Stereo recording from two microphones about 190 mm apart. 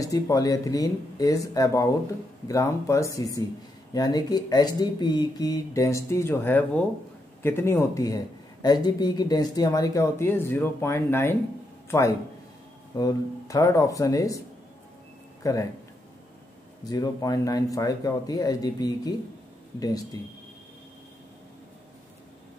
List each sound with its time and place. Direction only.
0.0 s speech: 20° left (ahead or behind)
12.9 s speech: 20° left (ahead or behind)
15.4 s speech: 15° left (ahead or behind)
16.9 s speech: 20° left (ahead or behind)